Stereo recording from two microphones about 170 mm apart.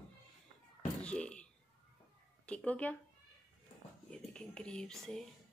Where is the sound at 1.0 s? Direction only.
5° left (ahead or behind).